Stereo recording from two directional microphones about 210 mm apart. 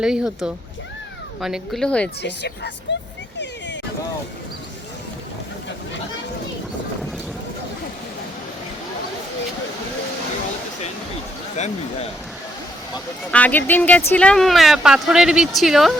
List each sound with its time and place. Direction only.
0.0 s speech: 5° right (ahead or behind)
2.9 s speech: 60° left (ahead or behind)
11.5 s speech: 35° left (ahead or behind)
13.3 s speech: 5° left (ahead or behind)